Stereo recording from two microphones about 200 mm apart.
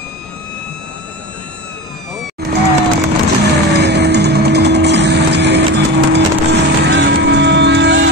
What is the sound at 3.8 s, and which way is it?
Vehicle, 55° right (ahead or behind).